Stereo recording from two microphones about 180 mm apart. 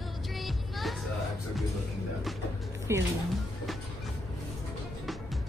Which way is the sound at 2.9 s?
15° right (ahead or behind).